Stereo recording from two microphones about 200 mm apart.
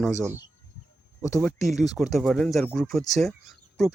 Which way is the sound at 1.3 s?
Centre (ahead or behind).